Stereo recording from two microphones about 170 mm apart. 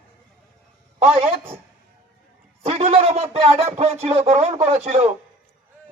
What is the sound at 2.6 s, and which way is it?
Speech, 40° right (ahead or behind).